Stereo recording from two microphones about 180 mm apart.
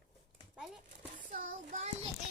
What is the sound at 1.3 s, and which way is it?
Child singing, 45° right (ahead or behind).